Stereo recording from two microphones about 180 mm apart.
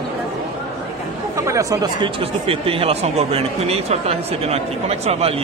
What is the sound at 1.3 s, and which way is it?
Speech, 15° right (ahead or behind).